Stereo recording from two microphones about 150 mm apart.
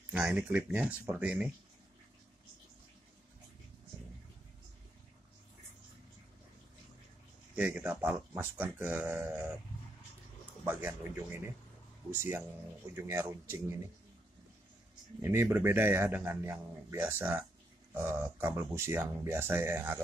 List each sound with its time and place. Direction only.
0.1 s speech: 10° right (ahead or behind)
7.5 s speech: 10° right (ahead or behind)
10.6 s speech: 20° right (ahead or behind)
15.2 s speech: 15° right (ahead or behind)